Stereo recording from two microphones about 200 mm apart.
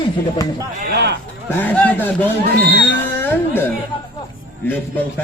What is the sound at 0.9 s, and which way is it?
Speech, 55° right (ahead or behind).